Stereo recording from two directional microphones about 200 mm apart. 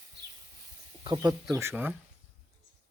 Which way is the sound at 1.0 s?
20° right (ahead or behind).